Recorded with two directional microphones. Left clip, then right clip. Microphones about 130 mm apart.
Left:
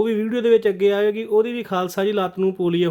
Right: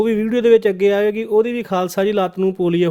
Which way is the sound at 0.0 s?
40° right (ahead or behind).